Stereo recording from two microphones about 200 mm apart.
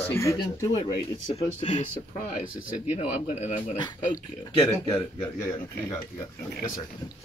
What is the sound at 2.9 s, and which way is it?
Speech, 30° left (ahead or behind).